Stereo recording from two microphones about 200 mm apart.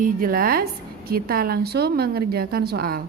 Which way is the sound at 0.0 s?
45° right (ahead or behind).